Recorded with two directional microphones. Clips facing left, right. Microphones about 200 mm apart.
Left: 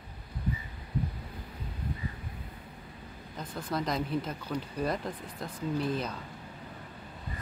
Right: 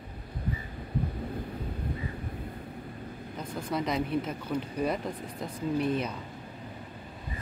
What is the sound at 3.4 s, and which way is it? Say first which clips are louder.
Speech: right 2 dB; 10° right (ahead or behind).